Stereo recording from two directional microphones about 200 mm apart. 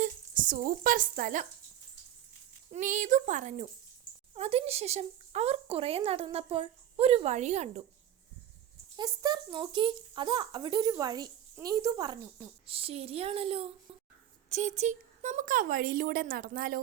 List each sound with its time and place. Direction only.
0.0 s speech: 40° right (ahead or behind)
2.7 s speech: 40° right (ahead or behind)
9.0 s speech: 20° right (ahead or behind); by 16.8 s 45° right (ahead or behind)